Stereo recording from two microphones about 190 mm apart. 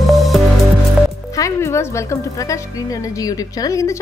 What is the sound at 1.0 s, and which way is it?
Music, centre (ahead or behind).